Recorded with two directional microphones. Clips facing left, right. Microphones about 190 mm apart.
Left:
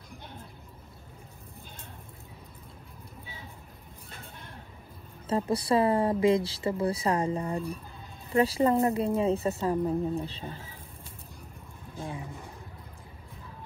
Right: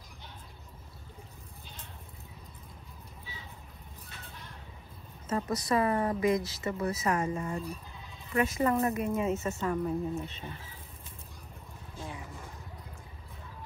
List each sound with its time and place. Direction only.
5.2 s a woman's voice: 30° left (ahead or behind)